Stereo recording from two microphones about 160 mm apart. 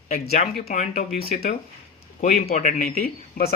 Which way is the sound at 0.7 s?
45° left (ahead or behind).